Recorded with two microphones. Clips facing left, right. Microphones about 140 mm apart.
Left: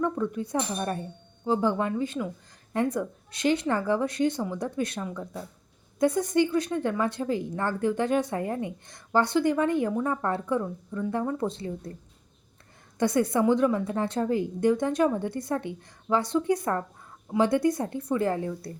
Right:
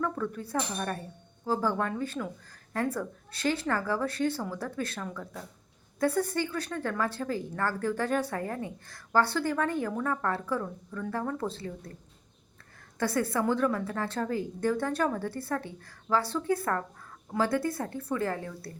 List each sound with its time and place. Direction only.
0.0 s a woman's voice: 20° left (ahead or behind)
13.5 s a woman's voice: 20° left (ahead or behind)